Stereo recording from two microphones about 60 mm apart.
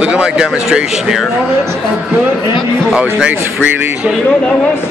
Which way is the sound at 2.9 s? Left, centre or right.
Centre.